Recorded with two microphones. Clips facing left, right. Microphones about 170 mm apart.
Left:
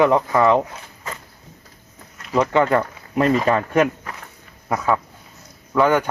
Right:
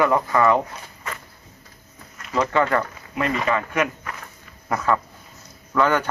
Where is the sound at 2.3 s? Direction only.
20° left (ahead or behind).